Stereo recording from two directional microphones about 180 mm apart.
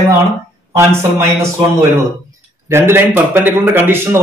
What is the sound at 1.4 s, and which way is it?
Speech, 25° right (ahead or behind).